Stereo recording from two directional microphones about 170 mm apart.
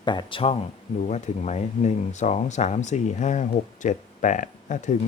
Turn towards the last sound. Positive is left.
turn(degrees=45)  # may be behind; listen again after turning